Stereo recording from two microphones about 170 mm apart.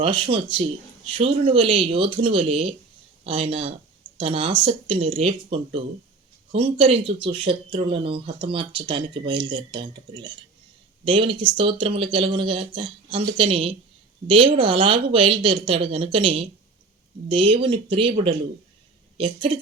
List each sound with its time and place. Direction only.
0.0 s speech: 30° right (ahead or behind)
1.5 s speech: 30° right (ahead or behind)
19.1 s a woman's voice: 30° right (ahead or behind)